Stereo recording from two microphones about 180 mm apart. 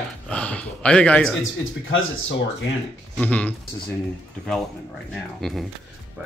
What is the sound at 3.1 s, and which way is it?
Speech, 10° left (ahead or behind).